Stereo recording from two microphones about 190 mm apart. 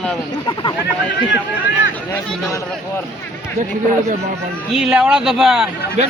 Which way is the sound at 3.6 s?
15° right (ahead or behind).